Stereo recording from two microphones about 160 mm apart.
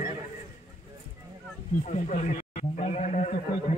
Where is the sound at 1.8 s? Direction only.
45° left (ahead or behind).